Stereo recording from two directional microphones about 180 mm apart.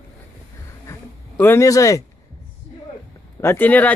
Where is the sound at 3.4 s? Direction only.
10° left (ahead or behind).